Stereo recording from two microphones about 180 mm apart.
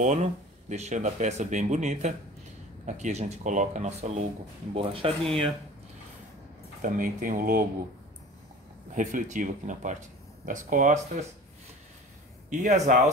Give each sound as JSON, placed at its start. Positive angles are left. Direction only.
{"t": 0.0, "sound": "speech", "side_deg": -40}
{"t": 6.8, "sound": "speech", "side_deg": -50}
{"t": 8.9, "sound": "speech", "side_deg": -45}
{"t": 12.4, "sound": "speech", "side_deg": -40}